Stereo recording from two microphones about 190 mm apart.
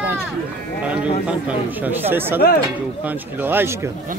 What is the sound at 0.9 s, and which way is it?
Speech, 5° right (ahead or behind).